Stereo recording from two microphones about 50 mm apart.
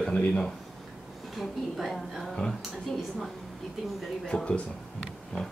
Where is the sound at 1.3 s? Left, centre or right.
Centre.